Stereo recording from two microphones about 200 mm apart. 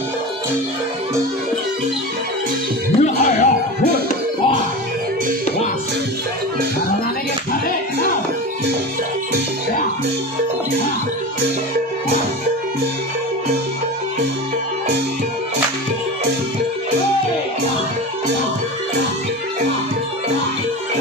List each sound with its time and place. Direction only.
3.0 s music: 40° left (ahead or behind)